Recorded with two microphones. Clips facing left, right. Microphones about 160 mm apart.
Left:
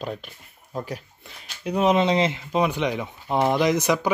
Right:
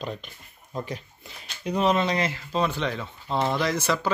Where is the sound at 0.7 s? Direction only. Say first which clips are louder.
Left 2 dB; 5° left (ahead or behind).